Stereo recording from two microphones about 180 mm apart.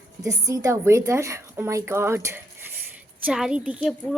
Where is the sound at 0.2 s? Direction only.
20° right (ahead or behind).